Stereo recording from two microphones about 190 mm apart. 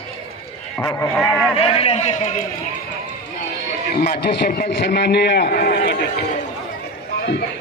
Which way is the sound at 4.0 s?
60° left (ahead or behind).